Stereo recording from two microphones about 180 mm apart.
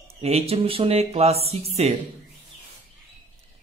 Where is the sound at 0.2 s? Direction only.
35° right (ahead or behind).